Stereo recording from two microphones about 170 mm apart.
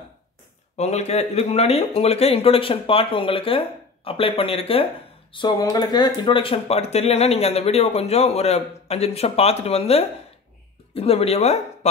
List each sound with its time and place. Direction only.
0.7 s speech: 40° left (ahead or behind)